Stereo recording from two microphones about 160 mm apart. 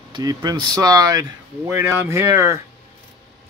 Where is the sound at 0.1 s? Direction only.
25° right (ahead or behind).